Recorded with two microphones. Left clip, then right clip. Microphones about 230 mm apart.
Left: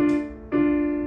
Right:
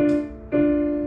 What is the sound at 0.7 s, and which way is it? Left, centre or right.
Keyboard, centre.